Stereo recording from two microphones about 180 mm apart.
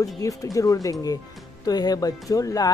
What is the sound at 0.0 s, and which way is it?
Speech, 20° left (ahead or behind).